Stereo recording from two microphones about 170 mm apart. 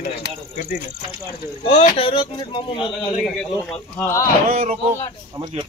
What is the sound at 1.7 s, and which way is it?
Speech, 35° left (ahead or behind).